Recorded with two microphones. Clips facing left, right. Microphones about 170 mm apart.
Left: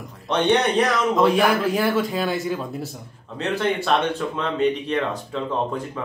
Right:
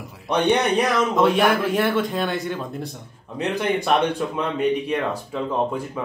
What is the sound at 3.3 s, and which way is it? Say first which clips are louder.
Speech: even; 15° right (ahead or behind).